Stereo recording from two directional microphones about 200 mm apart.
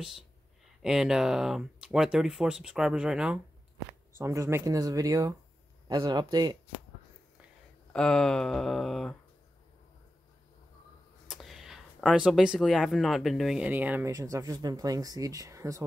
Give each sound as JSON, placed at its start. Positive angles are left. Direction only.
{"t": 0.8, "sound": "speech", "side_deg": 0}
{"t": 4.2, "sound": "speech", "side_deg": -15}
{"t": 7.9, "sound": "speech", "side_deg": 5}
{"t": 11.2, "sound": "speech", "side_deg": 0}